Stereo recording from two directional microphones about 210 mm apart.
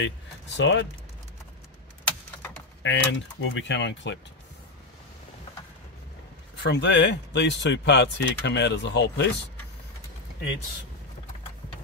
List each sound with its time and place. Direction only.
0.6 s speech: 60° left (ahead or behind)
2.8 s speech: 65° left (ahead or behind)
6.6 s speech: 60° left (ahead or behind)